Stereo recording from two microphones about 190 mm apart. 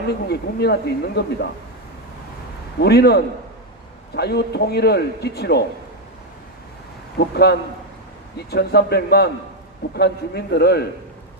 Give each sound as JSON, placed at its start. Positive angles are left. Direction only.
{"t": 0.1, "sound": "speech", "side_deg": 60}
{"t": 2.8, "sound": "speech", "side_deg": 60}
{"t": 7.2, "sound": "speech", "side_deg": 60}